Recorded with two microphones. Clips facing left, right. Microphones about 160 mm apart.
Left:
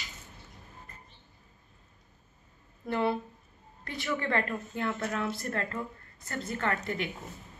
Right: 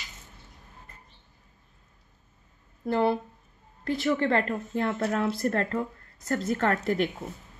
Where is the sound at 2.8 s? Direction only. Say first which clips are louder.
Right 5 dB; 35° right (ahead or behind).